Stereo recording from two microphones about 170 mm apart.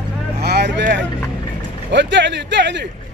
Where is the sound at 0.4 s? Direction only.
75° right (ahead or behind).